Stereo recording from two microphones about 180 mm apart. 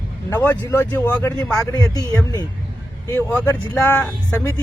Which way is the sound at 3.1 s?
10° left (ahead or behind).